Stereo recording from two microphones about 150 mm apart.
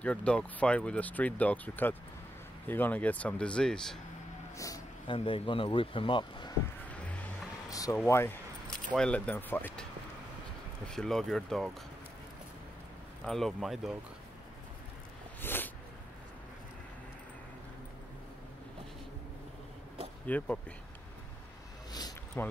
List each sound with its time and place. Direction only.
0.0 s speech: 10° left (ahead or behind)
4.6 s speech: 20° left (ahead or behind)
5.0 s speech: 35° left (ahead or behind)
7.7 s speech: 20° left (ahead or behind)
10.9 s speech: 5° left (ahead or behind)
13.2 s speech: 5° left (ahead or behind)
15.4 s a sound: 15° left (ahead or behind)
20.2 s speech: 10° left (ahead or behind)
21.9 s a sound: 25° left (ahead or behind)